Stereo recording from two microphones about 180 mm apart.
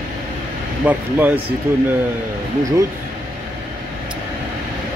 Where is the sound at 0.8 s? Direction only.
10° right (ahead or behind).